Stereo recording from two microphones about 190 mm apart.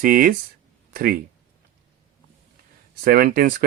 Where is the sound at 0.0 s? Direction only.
50° right (ahead or behind).